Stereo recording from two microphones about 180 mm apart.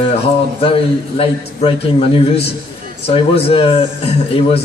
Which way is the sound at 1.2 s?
30° left (ahead or behind).